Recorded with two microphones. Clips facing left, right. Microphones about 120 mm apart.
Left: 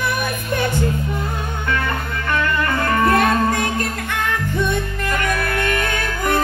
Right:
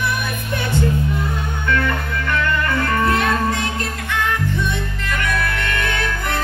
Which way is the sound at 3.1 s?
50° left (ahead or behind).